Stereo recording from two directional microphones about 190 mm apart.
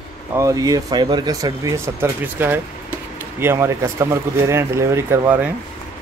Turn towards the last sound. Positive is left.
turn(degrees=-10)  # may be behind; listen again after turning